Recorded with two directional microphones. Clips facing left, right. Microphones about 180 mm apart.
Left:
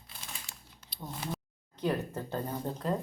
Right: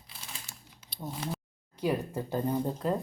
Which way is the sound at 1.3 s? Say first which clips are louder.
Right 1 dB; 10° right (ahead or behind).